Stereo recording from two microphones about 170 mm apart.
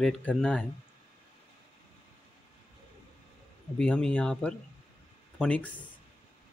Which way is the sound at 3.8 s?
5° left (ahead or behind).